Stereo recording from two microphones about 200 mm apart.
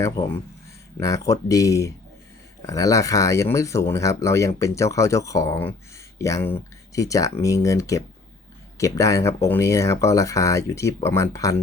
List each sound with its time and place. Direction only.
0.9 s speech: 15° left (ahead or behind)